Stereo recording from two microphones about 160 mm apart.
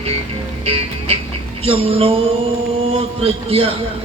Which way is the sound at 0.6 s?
40° right (ahead or behind).